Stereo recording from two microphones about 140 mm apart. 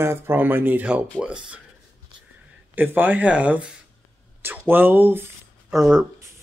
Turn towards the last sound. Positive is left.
turn(degrees=-5)  # may be behind; listen again after turning